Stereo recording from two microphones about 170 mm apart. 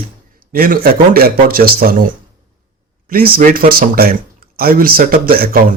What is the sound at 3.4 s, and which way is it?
Speech, 55° right (ahead or behind).